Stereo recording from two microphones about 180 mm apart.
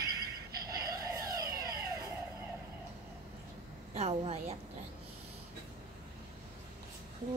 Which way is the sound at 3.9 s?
35° right (ahead or behind).